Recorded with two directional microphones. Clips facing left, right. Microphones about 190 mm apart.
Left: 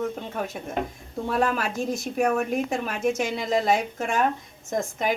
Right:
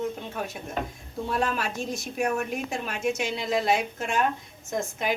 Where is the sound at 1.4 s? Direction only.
50° left (ahead or behind).